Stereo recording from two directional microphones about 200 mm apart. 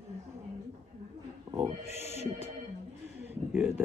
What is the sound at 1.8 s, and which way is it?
Music, 35° left (ahead or behind).